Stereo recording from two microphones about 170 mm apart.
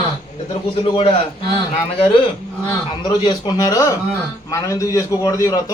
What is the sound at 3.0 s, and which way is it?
A man's voice, 25° left (ahead or behind).